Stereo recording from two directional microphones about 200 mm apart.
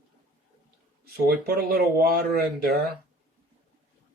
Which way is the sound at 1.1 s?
50° right (ahead or behind).